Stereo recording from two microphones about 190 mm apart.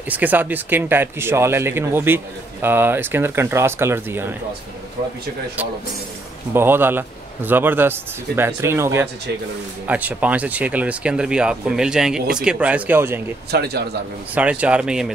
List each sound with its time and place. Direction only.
0.1 s speech: 10° right (ahead or behind)
6.5 s speech: 10° right (ahead or behind)
13.5 s speech: 55° right (ahead or behind)
14.3 s speech: 5° right (ahead or behind)